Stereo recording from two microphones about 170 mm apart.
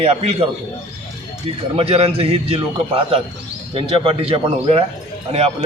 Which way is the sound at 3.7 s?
35° right (ahead or behind).